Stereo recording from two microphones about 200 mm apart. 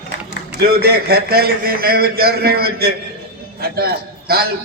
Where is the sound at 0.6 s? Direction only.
50° right (ahead or behind).